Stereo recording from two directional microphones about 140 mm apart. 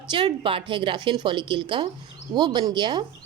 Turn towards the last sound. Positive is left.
turn(degrees=-30)  # may be behind; listen again after turning